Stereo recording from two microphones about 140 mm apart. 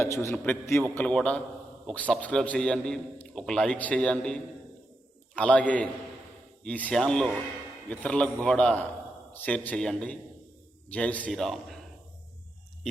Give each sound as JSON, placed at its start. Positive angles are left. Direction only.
{"t": 0.0, "sound": "a man's voice", "side_deg": 20}